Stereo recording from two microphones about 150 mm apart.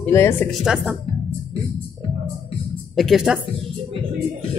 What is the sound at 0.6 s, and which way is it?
Speech, 5° right (ahead or behind).